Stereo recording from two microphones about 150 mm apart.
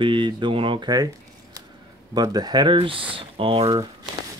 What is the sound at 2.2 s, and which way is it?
Speech, 25° right (ahead or behind).